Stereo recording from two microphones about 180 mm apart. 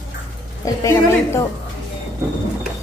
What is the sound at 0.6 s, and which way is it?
Speech, 15° left (ahead or behind).